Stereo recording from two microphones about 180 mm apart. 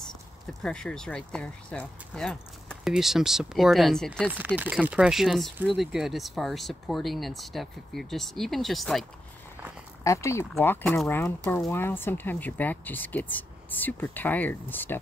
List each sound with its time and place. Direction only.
0.5 s speech: centre (ahead or behind)
10.0 s speech: 15° left (ahead or behind)